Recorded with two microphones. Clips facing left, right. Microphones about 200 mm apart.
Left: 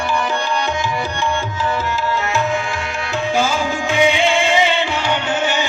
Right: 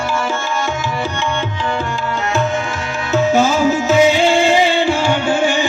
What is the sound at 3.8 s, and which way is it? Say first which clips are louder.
Music: right 2 dB; 40° right (ahead or behind).